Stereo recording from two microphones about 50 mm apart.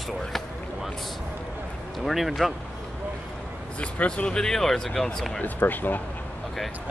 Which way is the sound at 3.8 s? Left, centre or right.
Left.